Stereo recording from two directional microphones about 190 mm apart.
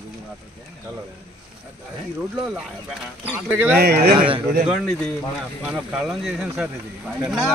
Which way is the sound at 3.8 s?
55° right (ahead or behind).